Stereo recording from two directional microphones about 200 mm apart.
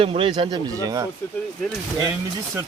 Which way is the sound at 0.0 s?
25° right (ahead or behind).